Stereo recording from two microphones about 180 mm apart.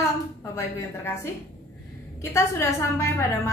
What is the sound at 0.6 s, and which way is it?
Speech, 15° left (ahead or behind).